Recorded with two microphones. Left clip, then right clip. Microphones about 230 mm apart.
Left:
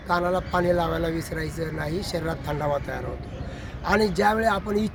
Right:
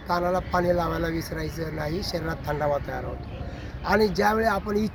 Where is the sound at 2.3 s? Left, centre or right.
Centre.